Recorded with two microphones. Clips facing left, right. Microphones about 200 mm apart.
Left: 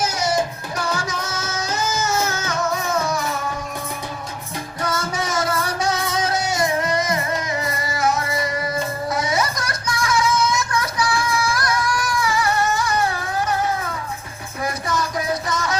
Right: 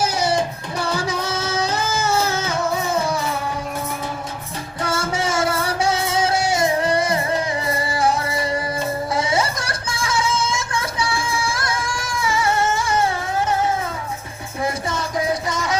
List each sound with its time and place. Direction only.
0.0 s music: 30° right (ahead or behind)
4.8 s music: 30° right (ahead or behind)
9.1 s a sound: 30° right (ahead or behind)
14.6 s music: 25° right (ahead or behind)